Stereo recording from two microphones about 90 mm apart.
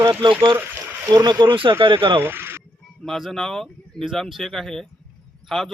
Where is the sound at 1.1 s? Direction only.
55° right (ahead or behind); by 2.2 s 70° right (ahead or behind).